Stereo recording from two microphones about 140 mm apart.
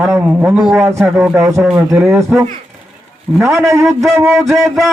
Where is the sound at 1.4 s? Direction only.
5° right (ahead or behind).